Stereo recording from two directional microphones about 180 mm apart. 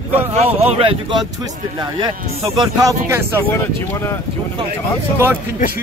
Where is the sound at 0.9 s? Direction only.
25° right (ahead or behind).